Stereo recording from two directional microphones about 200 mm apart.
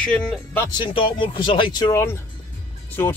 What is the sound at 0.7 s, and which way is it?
Speech, 25° left (ahead or behind).